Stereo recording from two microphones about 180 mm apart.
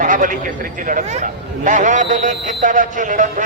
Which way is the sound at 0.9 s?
45° right (ahead or behind).